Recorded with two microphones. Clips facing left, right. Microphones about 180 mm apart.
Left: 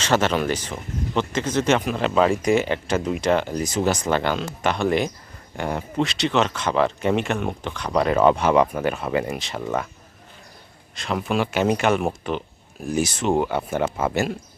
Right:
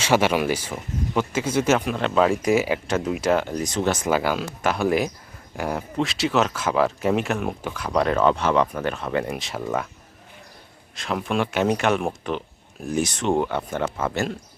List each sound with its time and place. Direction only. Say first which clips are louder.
0.0 s speech: right 1 dB; 10° right (ahead or behind)
4.0 s speech: even; 5° right (ahead or behind)
8.2 s speech: left 5 dB; 15° left (ahead or behind)
10.9 s speech: left 1 dB; centre (ahead or behind)